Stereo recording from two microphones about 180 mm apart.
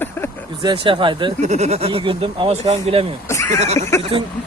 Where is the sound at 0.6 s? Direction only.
30° right (ahead or behind).